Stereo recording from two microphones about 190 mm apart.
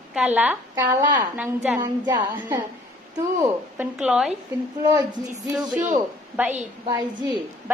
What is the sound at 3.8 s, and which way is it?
Speech, 5° right (ahead or behind).